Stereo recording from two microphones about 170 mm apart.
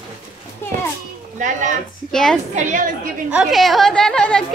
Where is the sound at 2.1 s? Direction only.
5° left (ahead or behind).